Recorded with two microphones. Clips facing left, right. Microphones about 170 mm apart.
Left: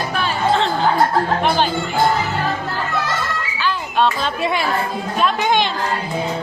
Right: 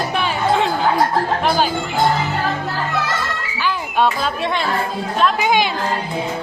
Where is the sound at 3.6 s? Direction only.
10° right (ahead or behind).